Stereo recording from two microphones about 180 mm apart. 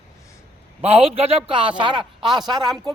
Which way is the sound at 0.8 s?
35° right (ahead or behind).